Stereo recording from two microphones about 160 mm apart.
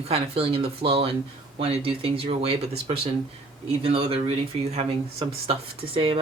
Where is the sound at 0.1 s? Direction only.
35° right (ahead or behind).